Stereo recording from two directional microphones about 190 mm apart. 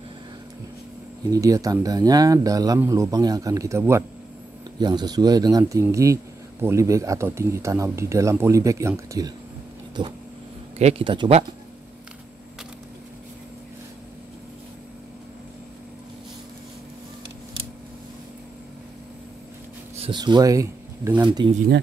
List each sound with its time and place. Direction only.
1.3 s speech: 15° right (ahead or behind)
20.0 s speech: 25° right (ahead or behind)